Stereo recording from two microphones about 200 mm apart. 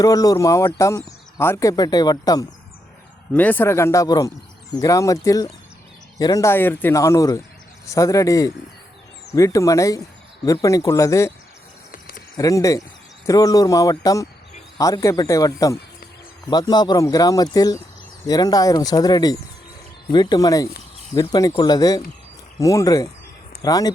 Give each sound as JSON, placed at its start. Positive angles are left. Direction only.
{"t": 0.0, "sound": "speech", "side_deg": 20}
{"t": 11.9, "sound": "a sound", "side_deg": 45}
{"t": 12.4, "sound": "speech", "side_deg": 15}